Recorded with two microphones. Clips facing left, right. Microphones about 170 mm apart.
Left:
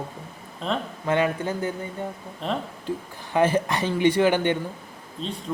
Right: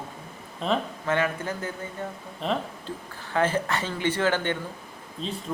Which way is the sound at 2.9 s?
15° left (ahead or behind).